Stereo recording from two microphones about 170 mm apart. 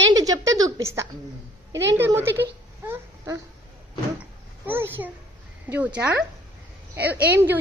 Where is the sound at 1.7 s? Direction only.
90° right.